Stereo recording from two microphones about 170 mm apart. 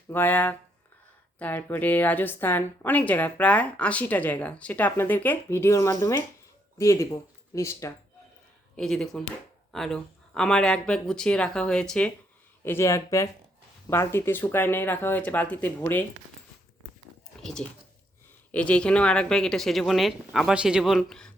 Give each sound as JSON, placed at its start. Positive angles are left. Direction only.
{"t": 0.1, "sound": "a woman's voice", "side_deg": 10}
{"t": 8.7, "sound": "a woman's voice", "side_deg": 5}
{"t": 17.4, "sound": "speech", "side_deg": 5}